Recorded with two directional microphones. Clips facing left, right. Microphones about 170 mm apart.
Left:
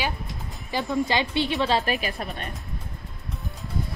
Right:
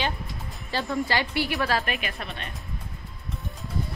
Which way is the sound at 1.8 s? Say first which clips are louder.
Left 4 dB; 35° left (ahead or behind).